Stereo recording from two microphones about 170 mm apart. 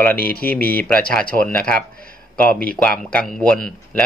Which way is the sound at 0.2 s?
60° left (ahead or behind).